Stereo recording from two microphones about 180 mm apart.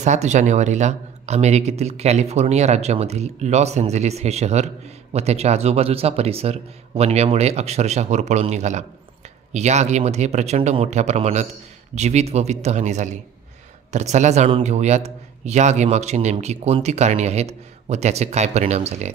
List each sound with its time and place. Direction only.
0.0 s a man's voice: 40° right (ahead or behind)